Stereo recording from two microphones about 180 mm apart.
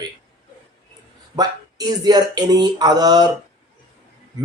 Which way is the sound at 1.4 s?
20° right (ahead or behind).